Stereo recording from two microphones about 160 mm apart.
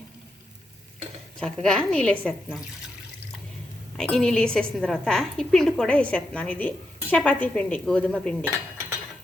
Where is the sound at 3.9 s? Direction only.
5° left (ahead or behind).